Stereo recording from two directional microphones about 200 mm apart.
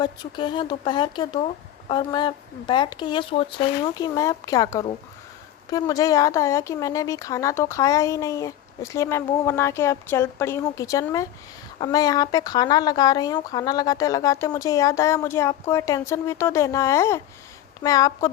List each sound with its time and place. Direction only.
0.0 s speech: 20° left (ahead or behind)